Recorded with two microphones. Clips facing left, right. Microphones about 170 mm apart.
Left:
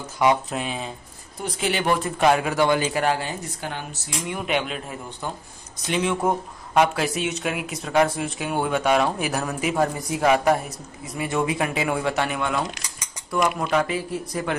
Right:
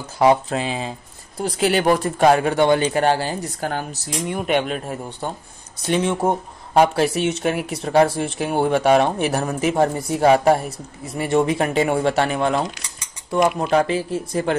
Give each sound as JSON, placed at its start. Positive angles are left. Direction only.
{"t": 0.2, "sound": "speech", "side_deg": -30}
{"t": 6.0, "sound": "speech", "side_deg": -30}